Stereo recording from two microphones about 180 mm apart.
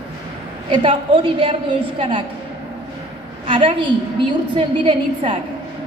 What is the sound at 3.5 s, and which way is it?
A woman's voice, 30° right (ahead or behind).